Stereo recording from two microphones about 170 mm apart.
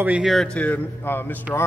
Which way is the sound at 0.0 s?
5° right (ahead or behind).